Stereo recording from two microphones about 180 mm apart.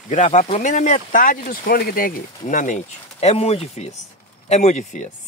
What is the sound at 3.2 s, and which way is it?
Speech, 35° left (ahead or behind).